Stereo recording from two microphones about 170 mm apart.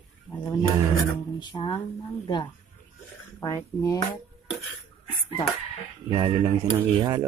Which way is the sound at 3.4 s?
20° left (ahead or behind).